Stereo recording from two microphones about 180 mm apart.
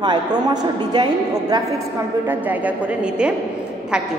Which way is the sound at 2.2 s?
10° right (ahead or behind).